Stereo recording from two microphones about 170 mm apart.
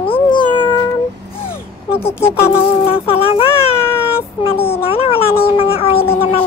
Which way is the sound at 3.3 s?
30° left (ahead or behind).